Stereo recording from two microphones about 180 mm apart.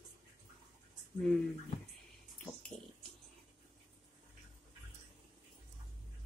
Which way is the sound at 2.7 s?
5° left (ahead or behind).